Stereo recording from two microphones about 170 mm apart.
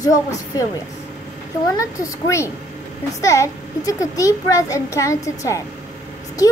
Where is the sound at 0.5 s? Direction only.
20° left (ahead or behind).